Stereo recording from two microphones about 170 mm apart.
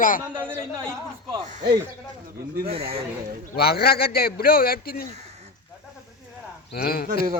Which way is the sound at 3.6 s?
65° left (ahead or behind).